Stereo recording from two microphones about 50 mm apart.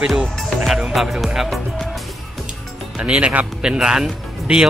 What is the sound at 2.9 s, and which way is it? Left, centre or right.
Speech, right.